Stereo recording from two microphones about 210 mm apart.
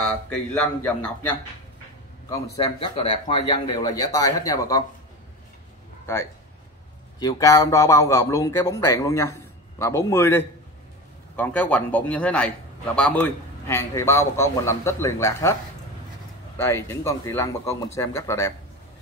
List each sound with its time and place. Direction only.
0.3 s a man's voice: 5° left (ahead or behind)
2.2 s a man's voice: 15° left (ahead or behind)
7.2 s a man's voice: 20° left (ahead or behind)
16.5 s a man's voice: 10° left (ahead or behind)